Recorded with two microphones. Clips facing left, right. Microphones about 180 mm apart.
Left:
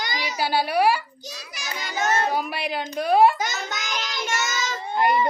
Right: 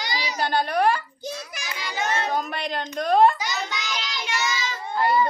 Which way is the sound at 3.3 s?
45° left (ahead or behind).